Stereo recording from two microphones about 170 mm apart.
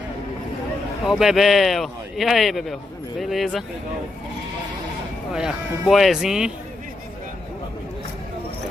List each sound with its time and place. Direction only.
1.0 s speech: centre (ahead or behind)
5.3 s speech: centre (ahead or behind)